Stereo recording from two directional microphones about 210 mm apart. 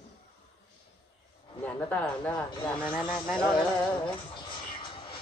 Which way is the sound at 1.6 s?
5° left (ahead or behind).